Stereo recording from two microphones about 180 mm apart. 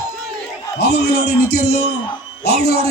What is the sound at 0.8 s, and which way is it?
A man's voice, 60° left (ahead or behind).